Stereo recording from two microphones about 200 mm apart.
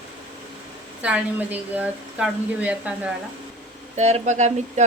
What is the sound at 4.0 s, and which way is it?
Speech, 35° right (ahead or behind).